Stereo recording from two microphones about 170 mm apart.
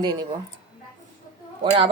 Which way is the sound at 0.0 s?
25° right (ahead or behind).